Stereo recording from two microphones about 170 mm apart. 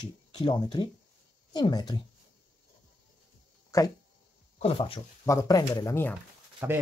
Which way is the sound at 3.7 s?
20° left (ahead or behind).